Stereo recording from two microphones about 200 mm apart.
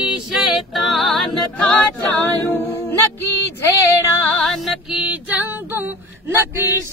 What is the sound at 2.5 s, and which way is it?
Music, 10° left (ahead or behind).